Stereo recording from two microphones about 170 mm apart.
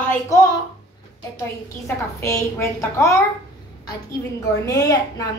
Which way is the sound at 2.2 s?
15° left (ahead or behind).